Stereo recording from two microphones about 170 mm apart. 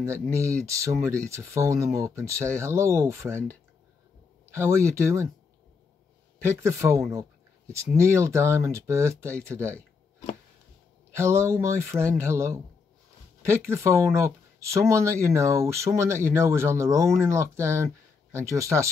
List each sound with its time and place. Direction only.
0.0 s speech: 15° right (ahead or behind)
4.5 s speech: 15° right (ahead or behind)
6.4 s speech: 15° right (ahead or behind)
11.1 s speech: 15° right (ahead or behind)